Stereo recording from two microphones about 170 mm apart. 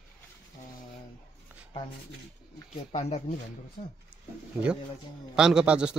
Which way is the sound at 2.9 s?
40° left (ahead or behind).